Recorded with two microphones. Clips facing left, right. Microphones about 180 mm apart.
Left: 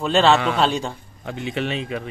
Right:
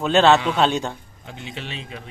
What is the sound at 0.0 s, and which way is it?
Speech, centre (ahead or behind).